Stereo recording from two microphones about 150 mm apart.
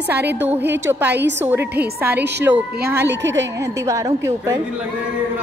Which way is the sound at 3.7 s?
20° right (ahead or behind).